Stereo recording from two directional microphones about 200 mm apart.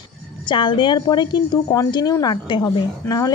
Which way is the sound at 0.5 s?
25° left (ahead or behind).